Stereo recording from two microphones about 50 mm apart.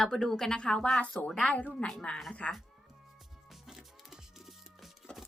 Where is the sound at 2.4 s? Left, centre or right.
Left.